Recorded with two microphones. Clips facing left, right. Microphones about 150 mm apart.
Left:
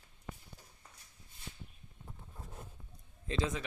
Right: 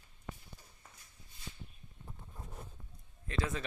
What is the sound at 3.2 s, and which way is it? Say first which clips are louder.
Speech: left 2 dB; 20° left (ahead or behind).